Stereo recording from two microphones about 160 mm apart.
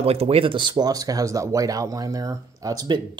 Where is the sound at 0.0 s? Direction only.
40° right (ahead or behind).